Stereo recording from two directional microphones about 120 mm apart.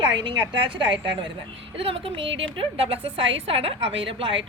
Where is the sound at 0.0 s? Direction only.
40° right (ahead or behind).